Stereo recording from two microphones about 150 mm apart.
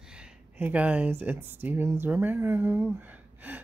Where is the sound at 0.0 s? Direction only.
5° right (ahead or behind).